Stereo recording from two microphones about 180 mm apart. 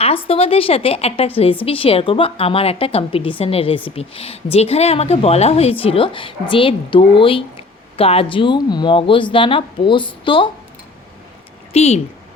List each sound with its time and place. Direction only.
0.0 s a woman's voice: 30° left (ahead or behind)
11.7 s speech: 35° left (ahead or behind)